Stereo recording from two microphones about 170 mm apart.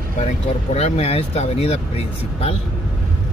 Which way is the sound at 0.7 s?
40° left (ahead or behind).